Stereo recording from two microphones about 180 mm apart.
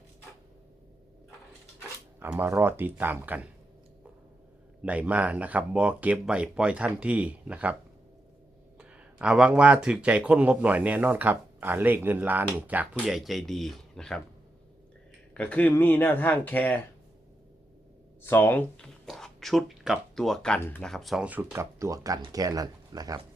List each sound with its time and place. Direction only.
2.1 s speech: 10° right (ahead or behind)
4.8 s speech: 5° right (ahead or behind)
8.8 s speech: 5° right (ahead or behind)
15.4 s speech: 10° left (ahead or behind)
18.2 s speech: 10° left (ahead or behind); by 23.2 s 20° right (ahead or behind)